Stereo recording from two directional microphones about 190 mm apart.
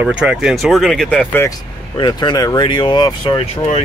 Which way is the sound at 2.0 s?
25° left (ahead or behind).